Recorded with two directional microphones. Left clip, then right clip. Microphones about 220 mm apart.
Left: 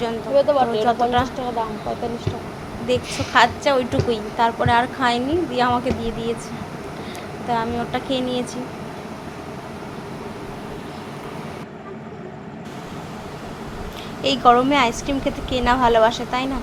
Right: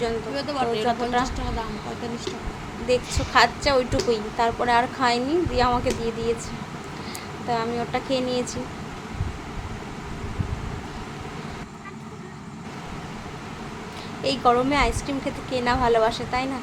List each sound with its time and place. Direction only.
0.3 s speech: 50° right (ahead or behind)
0.9 s a woman's voice: 10° left (ahead or behind)
2.9 s a woman's voice: 15° left (ahead or behind)
7.5 s a woman's voice: 10° left (ahead or behind)
14.3 s a woman's voice: 20° left (ahead or behind)